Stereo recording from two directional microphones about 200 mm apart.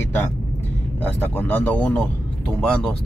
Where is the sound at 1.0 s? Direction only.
10° left (ahead or behind).